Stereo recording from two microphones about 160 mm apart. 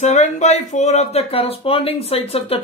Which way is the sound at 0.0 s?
45° left (ahead or behind).